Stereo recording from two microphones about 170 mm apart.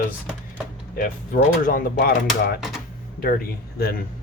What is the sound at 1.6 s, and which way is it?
Speech, 55° left (ahead or behind).